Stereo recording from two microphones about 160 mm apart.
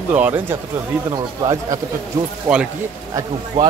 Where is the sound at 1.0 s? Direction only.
25° right (ahead or behind).